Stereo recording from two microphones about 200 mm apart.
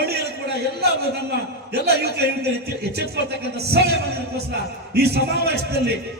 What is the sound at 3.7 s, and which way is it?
Speech, 55° right (ahead or behind).